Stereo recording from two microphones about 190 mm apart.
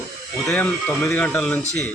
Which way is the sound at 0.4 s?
10° left (ahead or behind).